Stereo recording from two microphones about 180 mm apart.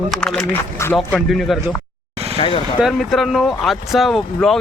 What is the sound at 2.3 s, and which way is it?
Speech, 30° left (ahead or behind).